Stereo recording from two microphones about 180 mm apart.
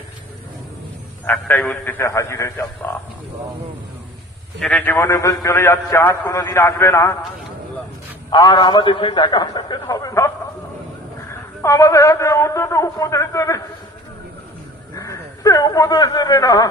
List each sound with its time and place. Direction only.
1.2 s a man's voice: 10° left (ahead or behind)
4.6 s a man's voice: 5° left (ahead or behind)
8.3 s a man's voice: 25° left (ahead or behind)
15.0 s a man's voice: 20° left (ahead or behind)